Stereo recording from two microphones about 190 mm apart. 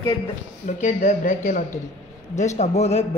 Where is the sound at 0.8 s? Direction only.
40° left (ahead or behind).